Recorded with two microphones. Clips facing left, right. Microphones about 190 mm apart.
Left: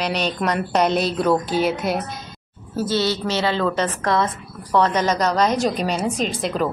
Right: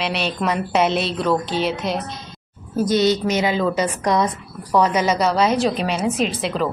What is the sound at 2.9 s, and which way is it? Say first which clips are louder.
A woman's voice: right 4 dB; 20° right (ahead or behind).